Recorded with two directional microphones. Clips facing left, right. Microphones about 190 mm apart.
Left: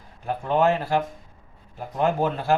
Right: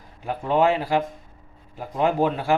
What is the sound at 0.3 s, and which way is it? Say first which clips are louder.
Speech: right 1 dB; 15° right (ahead or behind).